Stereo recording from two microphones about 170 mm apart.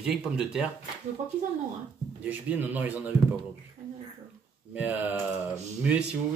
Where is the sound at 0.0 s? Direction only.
5° right (ahead or behind).